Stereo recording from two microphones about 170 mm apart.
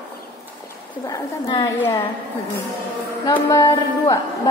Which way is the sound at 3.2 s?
20° left (ahead or behind).